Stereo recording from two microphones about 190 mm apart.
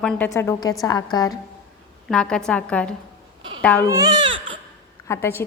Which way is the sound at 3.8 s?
20° right (ahead or behind).